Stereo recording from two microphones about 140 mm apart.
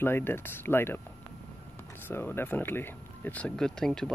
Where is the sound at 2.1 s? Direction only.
15° left (ahead or behind).